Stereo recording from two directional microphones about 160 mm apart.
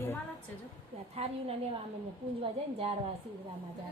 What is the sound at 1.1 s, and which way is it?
A woman's voice, 40° right (ahead or behind).